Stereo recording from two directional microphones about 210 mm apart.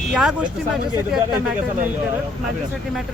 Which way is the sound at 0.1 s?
Centre (ahead or behind).